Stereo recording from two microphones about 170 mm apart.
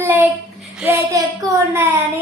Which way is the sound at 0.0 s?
15° right (ahead or behind).